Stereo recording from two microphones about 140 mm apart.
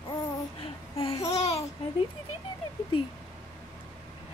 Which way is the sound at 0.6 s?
45° left (ahead or behind).